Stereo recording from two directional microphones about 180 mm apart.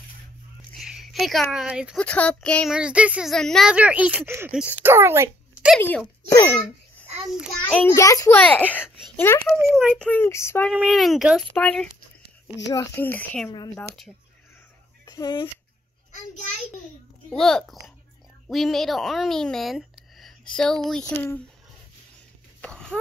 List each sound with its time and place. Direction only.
0.7 s speech: centre (ahead or behind)
2.0 s speech: 5° left (ahead or behind)
5.8 s a child's voice: 10° left (ahead or behind)
9.6 s speech: 10° right (ahead or behind)
9.9 s a child's voice: 10° left (ahead or behind)
10.7 s a child's voice: centre (ahead or behind)
15.0 s speech: 20° left (ahead or behind)
17.3 s speech: 5° left (ahead or behind)
22.6 s a sound: 5° left (ahead or behind)